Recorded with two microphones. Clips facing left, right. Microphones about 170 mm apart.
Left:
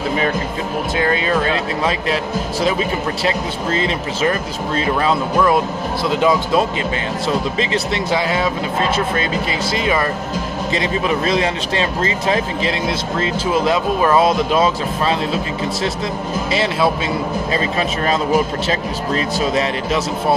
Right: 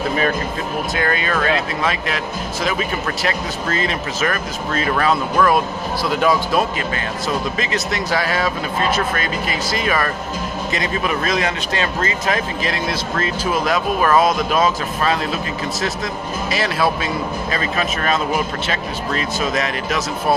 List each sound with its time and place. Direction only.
0.9 s speech: 25° left (ahead or behind)
16.5 s speech: 25° left (ahead or behind)